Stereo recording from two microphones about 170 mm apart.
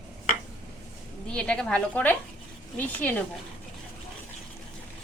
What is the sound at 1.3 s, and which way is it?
Speech, 5° left (ahead or behind).